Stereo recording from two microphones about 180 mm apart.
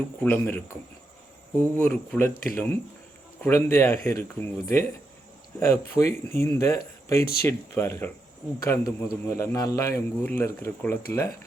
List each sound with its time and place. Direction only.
0.2 s speech: 10° left (ahead or behind)
1.7 s speech: 10° left (ahead or behind)